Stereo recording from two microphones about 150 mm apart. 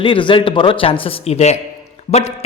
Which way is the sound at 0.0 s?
35° left (ahead or behind).